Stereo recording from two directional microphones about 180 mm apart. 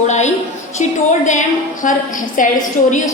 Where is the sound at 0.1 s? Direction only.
40° left (ahead or behind).